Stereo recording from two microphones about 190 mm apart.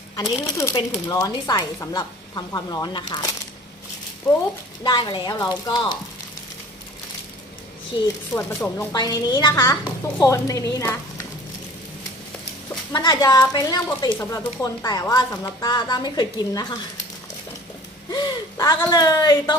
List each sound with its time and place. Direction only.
0.2 s a woman's voice: 15° left (ahead or behind)
4.8 s a woman's voice: 25° left (ahead or behind)
8.0 s speech: 10° left (ahead or behind)
12.9 s a woman's voice: 20° left (ahead or behind)
18.1 s a woman's voice: 20° left (ahead or behind)